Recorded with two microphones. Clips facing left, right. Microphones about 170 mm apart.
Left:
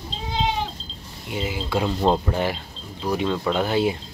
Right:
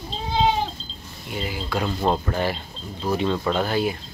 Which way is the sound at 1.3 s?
20° left (ahead or behind).